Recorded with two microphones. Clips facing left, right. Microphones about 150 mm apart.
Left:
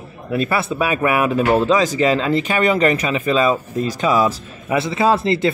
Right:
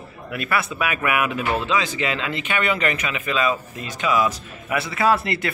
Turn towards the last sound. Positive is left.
turn(degrees=25)  # may be behind; listen again after turning